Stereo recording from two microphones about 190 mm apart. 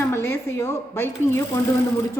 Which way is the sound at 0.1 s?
10° left (ahead or behind).